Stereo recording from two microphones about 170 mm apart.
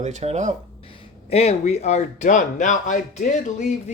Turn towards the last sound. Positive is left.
turn(degrees=45)  # may be behind; listen again after turning